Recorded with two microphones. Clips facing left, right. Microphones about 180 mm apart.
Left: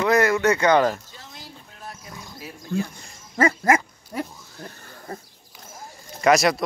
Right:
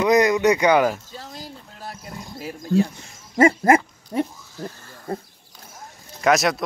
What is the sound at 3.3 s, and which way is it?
Speech, 30° right (ahead or behind).